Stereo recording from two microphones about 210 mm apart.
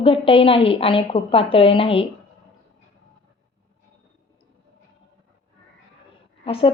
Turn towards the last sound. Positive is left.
turn(degrees=25)  # may be behind; listen again after turning